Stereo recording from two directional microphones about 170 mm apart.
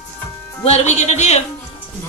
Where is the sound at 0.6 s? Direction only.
40° left (ahead or behind).